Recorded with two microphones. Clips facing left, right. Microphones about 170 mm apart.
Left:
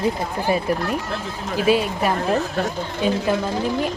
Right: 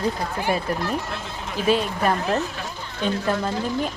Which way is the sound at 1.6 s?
10° left (ahead or behind).